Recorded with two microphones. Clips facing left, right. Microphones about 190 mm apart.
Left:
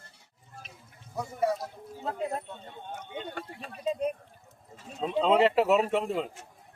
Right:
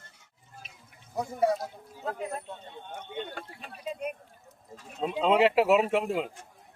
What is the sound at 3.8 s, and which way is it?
Speech, 30° left (ahead or behind).